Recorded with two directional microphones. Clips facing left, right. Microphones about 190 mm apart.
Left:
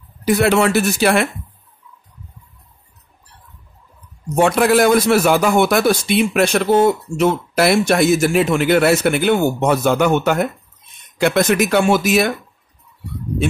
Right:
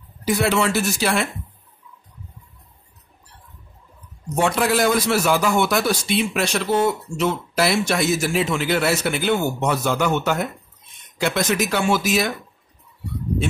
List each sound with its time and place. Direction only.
0.2 s a man's voice: 60° left (ahead or behind)
4.4 s a man's voice: 55° left (ahead or behind)